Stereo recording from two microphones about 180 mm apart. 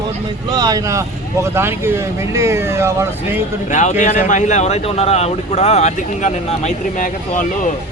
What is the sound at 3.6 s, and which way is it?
Speech, 40° left (ahead or behind).